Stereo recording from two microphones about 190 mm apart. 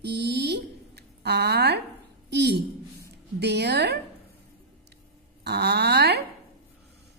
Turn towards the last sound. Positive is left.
turn(degrees=-60)  # may be behind; listen again after turning